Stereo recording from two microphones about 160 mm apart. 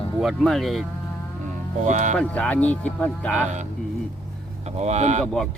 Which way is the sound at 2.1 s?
10° left (ahead or behind).